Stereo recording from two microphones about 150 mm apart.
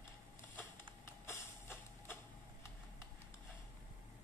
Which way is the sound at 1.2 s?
15° left (ahead or behind).